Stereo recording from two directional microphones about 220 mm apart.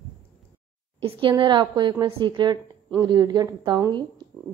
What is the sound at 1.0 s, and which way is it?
Speech, 20° right (ahead or behind).